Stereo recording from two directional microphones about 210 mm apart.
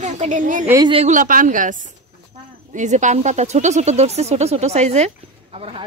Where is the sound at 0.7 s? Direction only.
20° right (ahead or behind).